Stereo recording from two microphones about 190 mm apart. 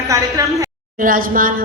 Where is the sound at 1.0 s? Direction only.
45° right (ahead or behind).